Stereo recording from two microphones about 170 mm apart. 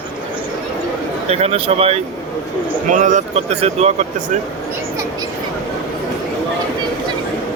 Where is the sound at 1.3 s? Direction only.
35° right (ahead or behind).